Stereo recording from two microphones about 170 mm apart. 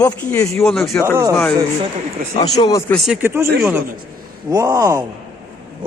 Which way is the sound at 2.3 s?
35° left (ahead or behind).